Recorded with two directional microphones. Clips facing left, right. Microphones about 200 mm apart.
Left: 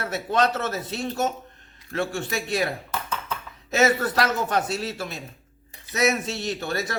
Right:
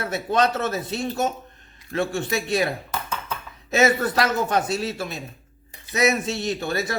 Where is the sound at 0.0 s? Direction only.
15° right (ahead or behind).